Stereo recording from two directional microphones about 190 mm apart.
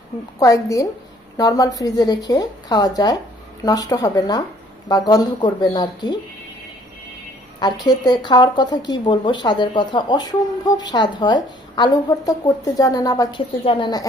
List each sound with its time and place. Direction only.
0.3 s a woman's voice: 20° left (ahead or behind)
7.6 s speech: 20° left (ahead or behind)